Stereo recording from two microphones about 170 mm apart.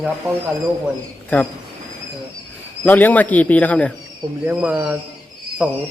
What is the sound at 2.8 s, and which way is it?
A man's voice, 10° left (ahead or behind).